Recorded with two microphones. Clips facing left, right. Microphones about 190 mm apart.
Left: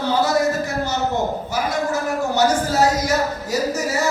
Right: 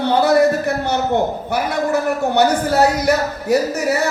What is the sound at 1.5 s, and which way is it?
Speech, 60° right (ahead or behind).